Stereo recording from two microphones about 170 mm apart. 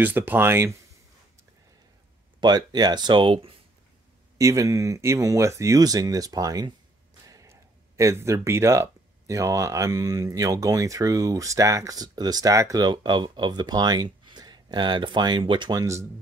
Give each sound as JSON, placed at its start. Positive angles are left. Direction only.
{"t": 0.0, "sound": "speech", "side_deg": -10}
{"t": 2.4, "sound": "speech", "side_deg": -25}
{"t": 4.4, "sound": "speech", "side_deg": -20}